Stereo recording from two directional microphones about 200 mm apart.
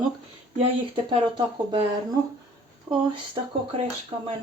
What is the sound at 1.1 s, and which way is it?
Speech, 25° right (ahead or behind).